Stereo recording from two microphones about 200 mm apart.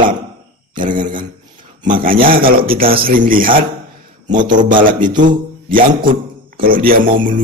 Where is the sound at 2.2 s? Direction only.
45° right (ahead or behind).